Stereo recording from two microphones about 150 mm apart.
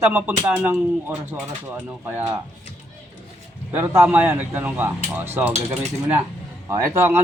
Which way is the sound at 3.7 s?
15° right (ahead or behind).